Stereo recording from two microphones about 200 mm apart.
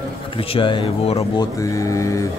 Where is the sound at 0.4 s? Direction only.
25° left (ahead or behind).